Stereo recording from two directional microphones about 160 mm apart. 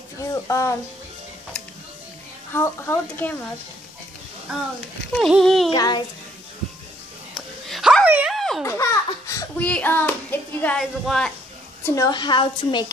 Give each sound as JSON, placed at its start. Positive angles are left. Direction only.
{"t": 0.3, "sound": "speech", "side_deg": 20}
{"t": 2.5, "sound": "a child's voice", "side_deg": 15}
{"t": 5.1, "sound": "a sound", "side_deg": 0}
{"t": 5.7, "sound": "a woman's voice", "side_deg": 25}
{"t": 7.3, "sound": "dog", "side_deg": 0}
{"t": 8.4, "sound": "baby laughter", "side_deg": 0}
{"t": 8.6, "sound": "baby laughter", "side_deg": 20}
{"t": 9.6, "sound": "a child's voice", "side_deg": 10}
{"t": 11.8, "sound": "a woman's voice", "side_deg": 20}